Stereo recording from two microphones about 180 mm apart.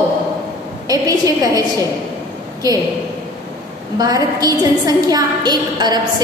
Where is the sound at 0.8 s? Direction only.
20° right (ahead or behind).